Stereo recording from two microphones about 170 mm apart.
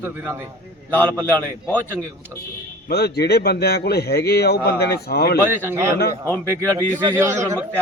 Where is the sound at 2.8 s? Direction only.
70° left (ahead or behind).